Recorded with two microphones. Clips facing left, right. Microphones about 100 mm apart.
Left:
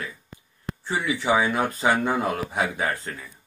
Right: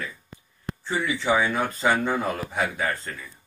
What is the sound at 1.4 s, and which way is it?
Speech, 15° left (ahead or behind).